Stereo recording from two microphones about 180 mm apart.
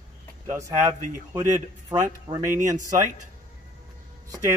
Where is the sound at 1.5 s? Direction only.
20° right (ahead or behind).